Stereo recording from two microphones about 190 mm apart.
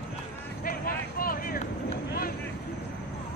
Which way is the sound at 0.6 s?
50° left (ahead or behind).